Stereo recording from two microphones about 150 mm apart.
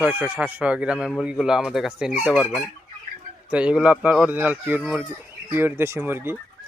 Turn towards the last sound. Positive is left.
turn(degrees=-15)  # may be behind; listen again after turning